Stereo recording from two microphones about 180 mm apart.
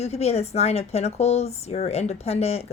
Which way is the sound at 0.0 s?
35° left (ahead or behind).